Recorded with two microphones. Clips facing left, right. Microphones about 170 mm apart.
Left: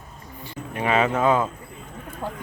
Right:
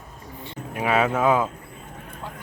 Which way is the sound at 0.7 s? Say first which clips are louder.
Even; 5° right (ahead or behind).